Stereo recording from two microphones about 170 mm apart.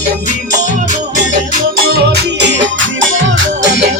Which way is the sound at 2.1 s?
80° right.